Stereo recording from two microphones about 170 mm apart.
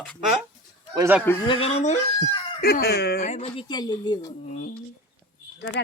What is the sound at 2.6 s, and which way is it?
Speech, 65° left (ahead or behind).